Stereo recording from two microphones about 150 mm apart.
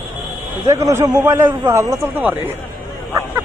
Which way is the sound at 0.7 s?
20° right (ahead or behind).